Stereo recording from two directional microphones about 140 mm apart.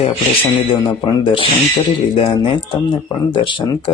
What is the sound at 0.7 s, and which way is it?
Speech, 35° left (ahead or behind).